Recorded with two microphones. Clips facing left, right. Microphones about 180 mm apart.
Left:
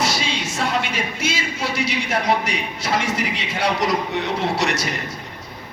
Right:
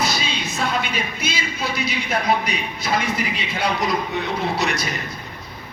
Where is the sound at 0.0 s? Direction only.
85° left.